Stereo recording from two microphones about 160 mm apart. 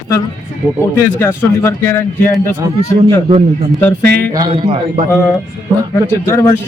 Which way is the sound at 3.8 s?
10° left (ahead or behind).